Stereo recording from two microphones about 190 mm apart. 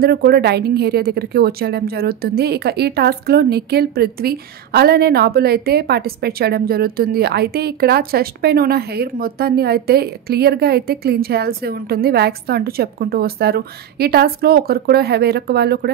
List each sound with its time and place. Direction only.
0.0 s a woman's voice: 55° right (ahead or behind)